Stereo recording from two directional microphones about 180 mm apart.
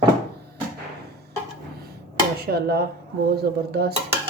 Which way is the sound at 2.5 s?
60° right (ahead or behind).